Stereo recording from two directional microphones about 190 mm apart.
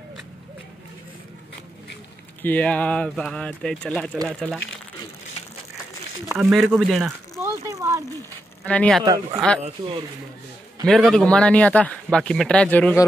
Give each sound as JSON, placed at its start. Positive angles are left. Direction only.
{"t": 2.4, "sound": "speech", "side_deg": 10}
{"t": 6.3, "sound": "speech", "side_deg": 0}
{"t": 7.3, "sound": "a sound", "side_deg": -15}
{"t": 8.6, "sound": "speech", "side_deg": 5}
{"t": 9.0, "sound": "speech", "side_deg": -20}
{"t": 10.9, "sound": "speech", "side_deg": 0}